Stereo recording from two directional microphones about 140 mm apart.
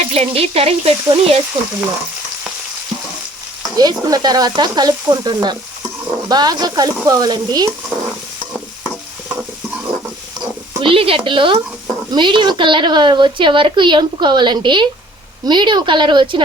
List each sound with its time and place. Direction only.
0.1 s sizzle: 45° right (ahead or behind)
1.0 s a woman's voice: 40° right (ahead or behind)
3.8 s sizzle: 30° right (ahead or behind)
10.8 s a woman's voice: 40° right (ahead or behind)